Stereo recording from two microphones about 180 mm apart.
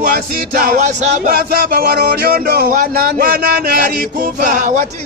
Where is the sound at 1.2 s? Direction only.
55° right (ahead or behind).